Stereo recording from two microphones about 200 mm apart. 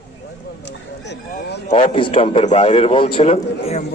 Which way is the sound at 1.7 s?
25° left (ahead or behind).